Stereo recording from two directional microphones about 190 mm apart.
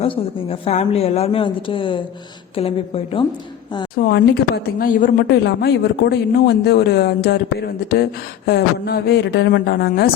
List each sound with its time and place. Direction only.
0.0 s a woman's voice: 30° left (ahead or behind)
3.9 s a woman's voice: 55° left (ahead or behind)